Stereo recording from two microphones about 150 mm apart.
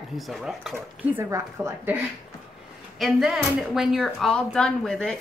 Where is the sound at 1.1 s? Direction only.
20° right (ahead or behind).